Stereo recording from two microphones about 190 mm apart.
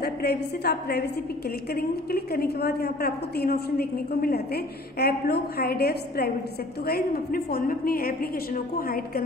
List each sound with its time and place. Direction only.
0.0 s a woman's voice: 55° left (ahead or behind)